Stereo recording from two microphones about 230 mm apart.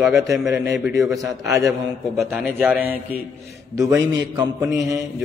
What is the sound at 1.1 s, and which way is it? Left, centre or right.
A man's voice, centre.